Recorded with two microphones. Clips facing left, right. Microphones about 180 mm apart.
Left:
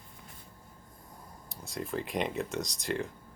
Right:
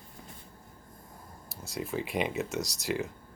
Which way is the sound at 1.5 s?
5° right (ahead or behind).